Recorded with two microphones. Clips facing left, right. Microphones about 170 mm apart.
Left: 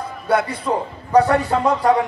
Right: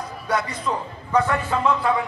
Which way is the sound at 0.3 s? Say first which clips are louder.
Left 6 dB; 60° left (ahead or behind).